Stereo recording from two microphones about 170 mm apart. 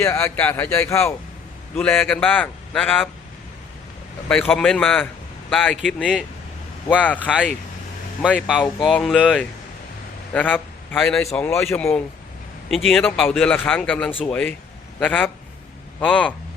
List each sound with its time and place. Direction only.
0.0 s speech: 15° left (ahead or behind)
4.3 s speech: 5° left (ahead or behind)
8.6 s a man's voice: 5° left (ahead or behind)
12.7 s speech: centre (ahead or behind)
13.1 s a man's voice: 10° left (ahead or behind)